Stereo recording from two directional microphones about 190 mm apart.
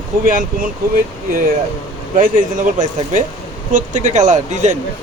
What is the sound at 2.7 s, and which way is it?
Speech, 40° right (ahead or behind).